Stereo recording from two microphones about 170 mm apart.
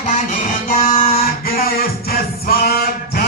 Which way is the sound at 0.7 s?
55° left (ahead or behind).